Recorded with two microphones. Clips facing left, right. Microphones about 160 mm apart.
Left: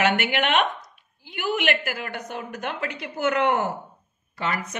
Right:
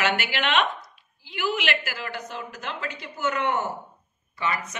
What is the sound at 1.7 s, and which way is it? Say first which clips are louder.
Speech: left 2 dB; 50° left (ahead or behind).